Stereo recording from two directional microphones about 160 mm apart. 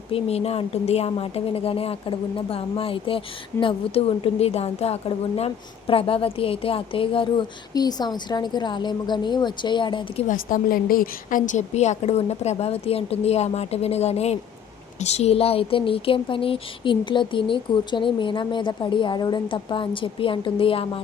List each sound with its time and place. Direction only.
0.1 s a woman's voice: 40° left (ahead or behind)
10.2 s a woman's voice: 60° left (ahead or behind); by 21.0 s 35° left (ahead or behind)